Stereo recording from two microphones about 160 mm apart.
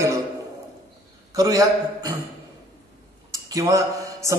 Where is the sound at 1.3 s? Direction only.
20° right (ahead or behind).